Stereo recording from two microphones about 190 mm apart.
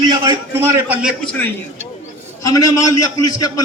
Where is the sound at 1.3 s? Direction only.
10° left (ahead or behind).